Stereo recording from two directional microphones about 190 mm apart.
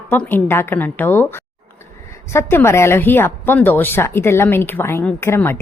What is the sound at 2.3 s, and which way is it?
A woman's voice, 15° left (ahead or behind).